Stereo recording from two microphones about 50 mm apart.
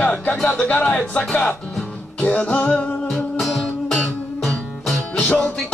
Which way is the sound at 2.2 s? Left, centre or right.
Left.